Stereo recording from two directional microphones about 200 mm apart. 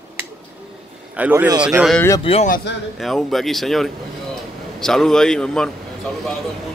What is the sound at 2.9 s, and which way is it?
A man's voice, centre (ahead or behind).